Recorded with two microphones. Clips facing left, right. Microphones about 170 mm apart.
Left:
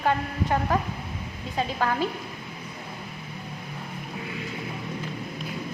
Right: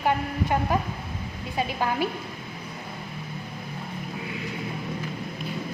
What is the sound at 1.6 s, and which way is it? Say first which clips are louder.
Speech: even; 15° right (ahead or behind).